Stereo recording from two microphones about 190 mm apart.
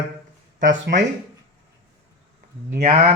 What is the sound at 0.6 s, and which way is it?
Speech, 75° right (ahead or behind).